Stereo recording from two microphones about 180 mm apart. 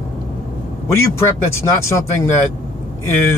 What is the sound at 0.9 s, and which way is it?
Speech, 15° left (ahead or behind).